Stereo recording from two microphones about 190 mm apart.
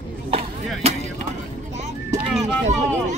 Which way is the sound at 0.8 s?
30° right (ahead or behind).